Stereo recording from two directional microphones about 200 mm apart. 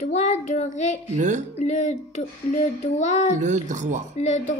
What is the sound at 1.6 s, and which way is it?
A child's voice, 35° left (ahead or behind).